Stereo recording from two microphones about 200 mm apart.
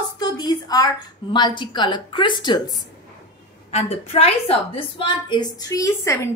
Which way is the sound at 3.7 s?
30° left (ahead or behind).